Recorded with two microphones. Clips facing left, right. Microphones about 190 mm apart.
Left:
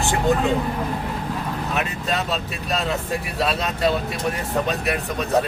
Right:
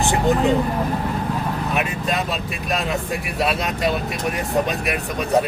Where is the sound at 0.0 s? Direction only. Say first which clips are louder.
Right 2 dB; 20° right (ahead or behind).